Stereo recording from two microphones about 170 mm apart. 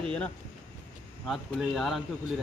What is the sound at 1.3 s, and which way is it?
Speech, centre (ahead or behind).